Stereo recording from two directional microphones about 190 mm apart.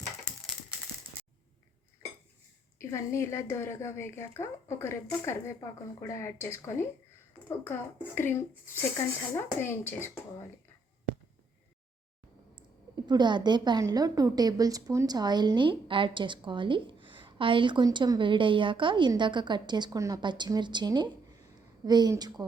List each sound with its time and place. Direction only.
2.7 s a woman's voice: 15° left (ahead or behind)
13.1 s a woman's voice: 25° right (ahead or behind)